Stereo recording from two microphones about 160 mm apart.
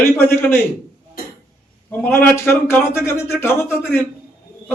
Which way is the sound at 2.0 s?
15° left (ahead or behind).